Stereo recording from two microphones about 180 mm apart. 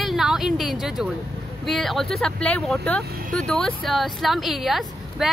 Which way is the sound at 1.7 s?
Centre (ahead or behind).